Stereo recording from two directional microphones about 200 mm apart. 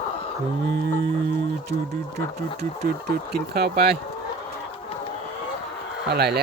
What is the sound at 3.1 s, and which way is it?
Speech, 50° right (ahead or behind).